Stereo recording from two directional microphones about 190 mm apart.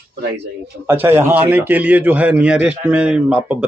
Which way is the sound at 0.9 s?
10° right (ahead or behind).